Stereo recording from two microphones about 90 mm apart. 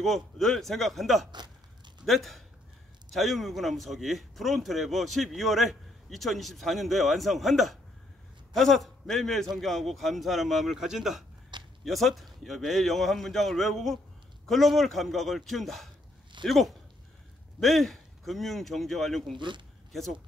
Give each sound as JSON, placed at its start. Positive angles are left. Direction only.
{"t": 0.0, "sound": "speech", "side_deg": 5}
{"t": 19.3, "sound": "speech", "side_deg": -60}